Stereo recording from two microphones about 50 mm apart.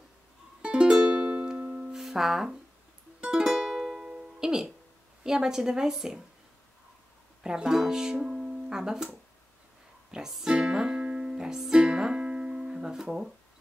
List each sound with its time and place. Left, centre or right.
0.6 s music: centre
1.8 s music: centre
4.1 s music: centre
5.2 s a woman's voice: centre
7.4 s speech: centre
10.1 s speech: centre